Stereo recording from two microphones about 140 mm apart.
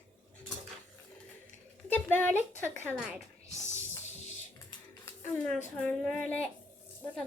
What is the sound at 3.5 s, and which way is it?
Music, 60° left (ahead or behind).